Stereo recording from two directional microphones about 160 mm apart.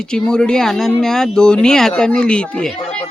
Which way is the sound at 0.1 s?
5° left (ahead or behind).